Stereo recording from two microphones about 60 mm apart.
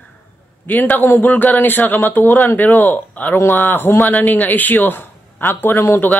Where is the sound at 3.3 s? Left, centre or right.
Left.